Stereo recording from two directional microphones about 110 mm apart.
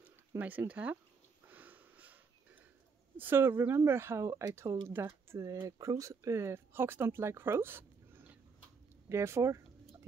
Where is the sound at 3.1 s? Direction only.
20° right (ahead or behind).